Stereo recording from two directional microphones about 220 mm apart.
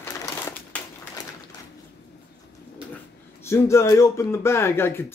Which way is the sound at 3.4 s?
10° left (ahead or behind).